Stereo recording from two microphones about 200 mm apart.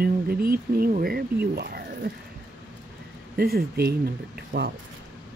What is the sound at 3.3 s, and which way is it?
Speech, 50° right (ahead or behind).